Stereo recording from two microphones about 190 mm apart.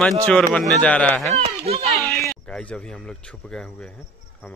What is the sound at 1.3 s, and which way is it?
Speech, 30° right (ahead or behind).